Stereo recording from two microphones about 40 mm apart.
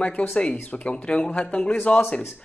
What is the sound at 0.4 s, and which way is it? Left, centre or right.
Speech, left.